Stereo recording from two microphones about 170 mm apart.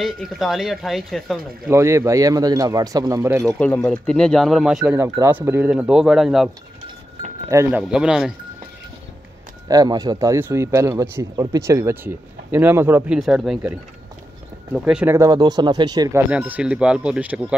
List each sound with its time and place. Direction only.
0.0 s speech: centre (ahead or behind)
1.7 s speech: 15° right (ahead or behind)
3.4 s speech: 5° left (ahead or behind)
5.0 s speech: 15° right (ahead or behind); by 6.5 s centre (ahead or behind)
7.4 s speech: 15° right (ahead or behind)
7.9 s speech: 5° right (ahead or behind)
9.7 s speech: 20° right (ahead or behind)
13.2 s speech: centre (ahead or behind)
15.1 s speech: 25° right (ahead or behind)
16.2 s speech: 10° right (ahead or behind)